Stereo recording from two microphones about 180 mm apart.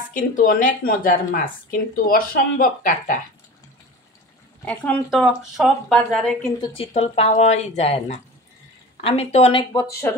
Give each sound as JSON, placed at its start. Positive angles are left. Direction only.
{"t": 0.1, "sound": "speech", "side_deg": 50}
{"t": 4.6, "sound": "speech", "side_deg": 5}
{"t": 6.7, "sound": "speech", "side_deg": 35}